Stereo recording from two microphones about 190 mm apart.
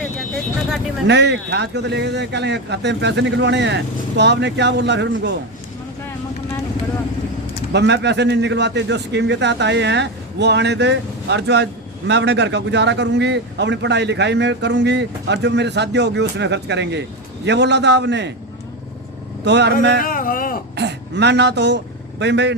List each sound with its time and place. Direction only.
1.0 s a man's voice: 65° right (ahead or behind)
7.7 s a man's voice: 65° right (ahead or behind)
19.5 s a man's voice: 65° right (ahead or behind)
20.1 s speech: 45° left (ahead or behind)
20.7 s a man's voice: 65° right (ahead or behind)